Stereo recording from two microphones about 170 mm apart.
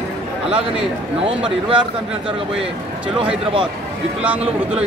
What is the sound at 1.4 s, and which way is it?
Speech, 30° right (ahead or behind).